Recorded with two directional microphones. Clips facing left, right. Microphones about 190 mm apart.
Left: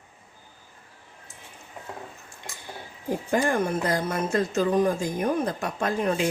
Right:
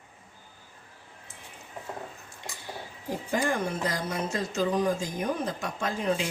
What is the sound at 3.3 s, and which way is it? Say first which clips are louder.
A woman's voice: left 4 dB; 55° left (ahead or behind).